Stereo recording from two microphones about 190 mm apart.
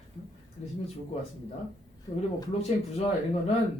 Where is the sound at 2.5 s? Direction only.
35° left (ahead or behind).